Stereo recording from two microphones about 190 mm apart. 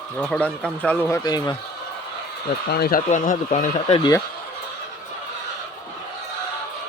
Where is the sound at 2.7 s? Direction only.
55° left (ahead or behind).